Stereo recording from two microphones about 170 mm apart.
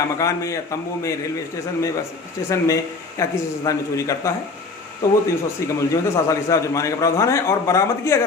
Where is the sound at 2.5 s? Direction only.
20° left (ahead or behind).